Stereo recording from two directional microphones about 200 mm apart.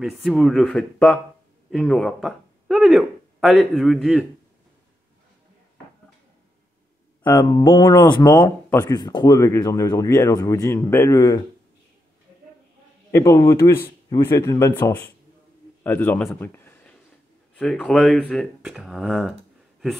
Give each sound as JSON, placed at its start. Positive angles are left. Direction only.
{"t": 0.0, "sound": "speech", "side_deg": 0}
{"t": 7.3, "sound": "speech", "side_deg": 20}
{"t": 8.8, "sound": "speech", "side_deg": 20}
{"t": 13.1, "sound": "a man's voice", "side_deg": 15}
{"t": 16.3, "sound": "a sound", "side_deg": 10}
{"t": 17.6, "sound": "speech", "side_deg": 5}